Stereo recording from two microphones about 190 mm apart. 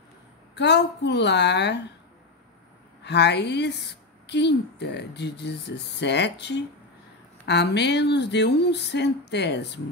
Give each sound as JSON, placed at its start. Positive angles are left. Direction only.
{"t": 0.6, "sound": "a woman's voice", "side_deg": 65}
{"t": 3.0, "sound": "a woman's voice", "side_deg": 65}